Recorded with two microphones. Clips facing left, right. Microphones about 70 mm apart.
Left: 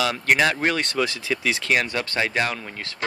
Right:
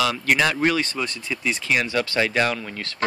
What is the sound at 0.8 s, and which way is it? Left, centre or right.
Speech, left.